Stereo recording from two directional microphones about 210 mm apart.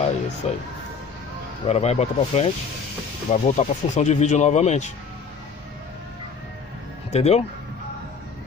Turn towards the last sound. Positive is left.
turn(degrees=30)  # may be behind; listen again after turning